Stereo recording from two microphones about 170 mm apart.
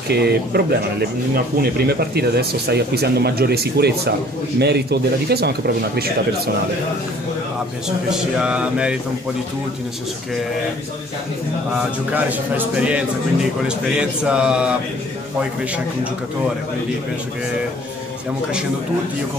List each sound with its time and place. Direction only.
0.1 s speech: 70° right (ahead or behind)
8.1 s speech: 5° right (ahead or behind)
12.1 s speech: 10° right (ahead or behind)